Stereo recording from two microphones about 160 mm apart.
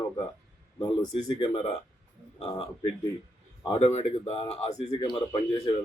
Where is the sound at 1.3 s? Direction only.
35° left (ahead or behind).